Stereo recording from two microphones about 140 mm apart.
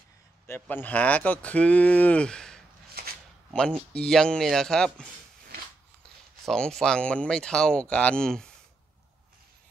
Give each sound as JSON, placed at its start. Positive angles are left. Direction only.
{"t": 0.6, "sound": "speech", "side_deg": 10}
{"t": 2.9, "sound": "a sound", "side_deg": -90}
{"t": 3.9, "sound": "speech", "side_deg": 5}
{"t": 6.4, "sound": "speech", "side_deg": 5}